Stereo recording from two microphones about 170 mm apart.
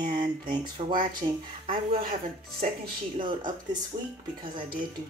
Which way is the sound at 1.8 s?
55° right (ahead or behind).